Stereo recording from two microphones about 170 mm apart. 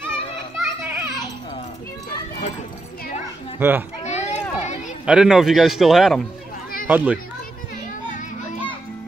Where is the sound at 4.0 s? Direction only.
40° left (ahead or behind).